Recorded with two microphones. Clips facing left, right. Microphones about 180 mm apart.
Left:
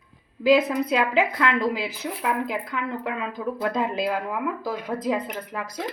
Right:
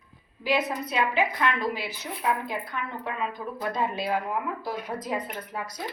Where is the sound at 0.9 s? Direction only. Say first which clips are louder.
Left 2 dB; 90° left.